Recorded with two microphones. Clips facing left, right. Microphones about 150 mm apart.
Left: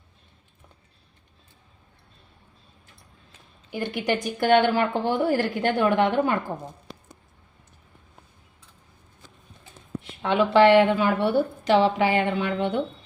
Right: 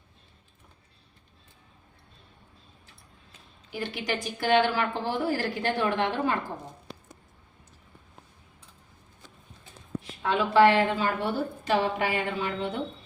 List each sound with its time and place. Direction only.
3.7 s a woman's voice: 50° left (ahead or behind)
10.0 s a woman's voice: 75° left (ahead or behind)